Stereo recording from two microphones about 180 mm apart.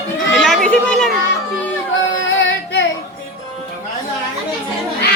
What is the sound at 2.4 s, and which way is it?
Music, 85° left.